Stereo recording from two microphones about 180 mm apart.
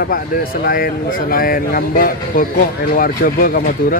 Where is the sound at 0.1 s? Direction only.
55° left (ahead or behind).